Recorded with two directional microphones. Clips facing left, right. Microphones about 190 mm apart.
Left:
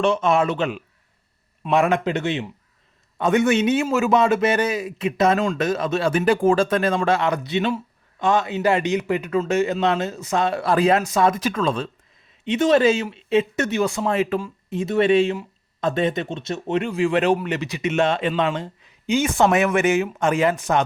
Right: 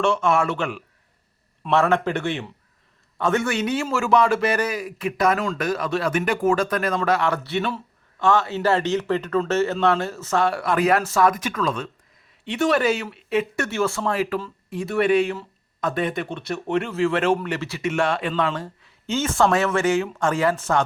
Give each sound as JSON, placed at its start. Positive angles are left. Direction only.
{"t": 0.0, "sound": "a man's voice", "side_deg": 20}